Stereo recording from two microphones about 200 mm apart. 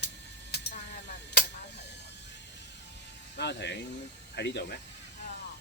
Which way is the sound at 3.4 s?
60° left (ahead or behind).